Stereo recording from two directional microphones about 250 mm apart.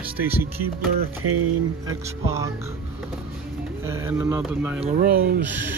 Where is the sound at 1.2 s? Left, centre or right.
Right.